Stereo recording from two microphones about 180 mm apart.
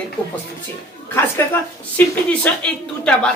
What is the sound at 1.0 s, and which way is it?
A woman's voice, 15° left (ahead or behind).